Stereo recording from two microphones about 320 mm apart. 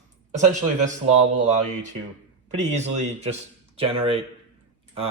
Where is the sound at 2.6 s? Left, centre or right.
Right.